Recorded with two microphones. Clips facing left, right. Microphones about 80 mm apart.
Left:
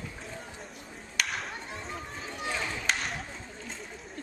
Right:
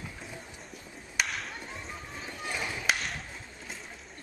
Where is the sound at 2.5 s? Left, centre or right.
Centre.